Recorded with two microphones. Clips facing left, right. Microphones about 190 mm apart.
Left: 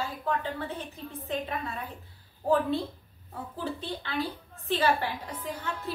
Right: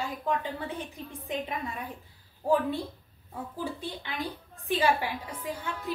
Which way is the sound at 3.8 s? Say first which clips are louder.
Left 3 dB; 15° right (ahead or behind).